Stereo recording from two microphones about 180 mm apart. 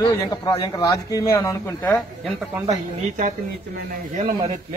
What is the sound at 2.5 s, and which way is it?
Speech, 20° right (ahead or behind).